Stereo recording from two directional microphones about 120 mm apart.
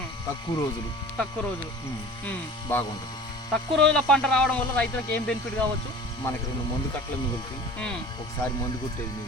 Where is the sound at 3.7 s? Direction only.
5° left (ahead or behind).